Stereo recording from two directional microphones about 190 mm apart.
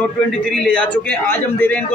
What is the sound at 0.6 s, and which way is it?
A man's voice, 5° left (ahead or behind).